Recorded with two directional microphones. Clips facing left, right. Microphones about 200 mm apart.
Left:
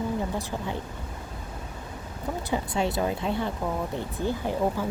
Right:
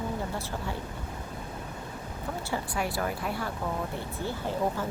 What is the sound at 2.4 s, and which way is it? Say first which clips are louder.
Speech: left 5 dB; 20° left (ahead or behind).